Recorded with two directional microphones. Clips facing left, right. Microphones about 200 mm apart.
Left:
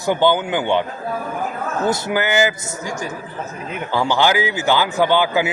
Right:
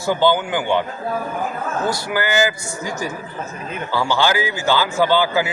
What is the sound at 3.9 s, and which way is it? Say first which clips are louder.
A man's voice: left 2 dB; 15° left (ahead or behind).